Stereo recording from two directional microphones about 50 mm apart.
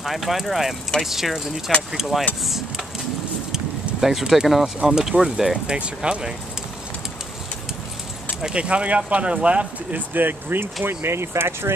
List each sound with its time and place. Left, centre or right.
0.0 s speech: centre
3.5 s a sound: centre
4.8 s speech: centre
5.7 s speech: centre
8.4 s speech: centre; by 11.7 s right